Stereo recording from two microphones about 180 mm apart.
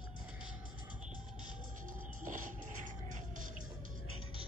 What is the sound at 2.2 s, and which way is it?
Music, 45° right (ahead or behind).